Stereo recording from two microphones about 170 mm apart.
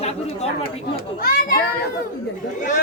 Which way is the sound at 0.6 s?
60° left (ahead or behind).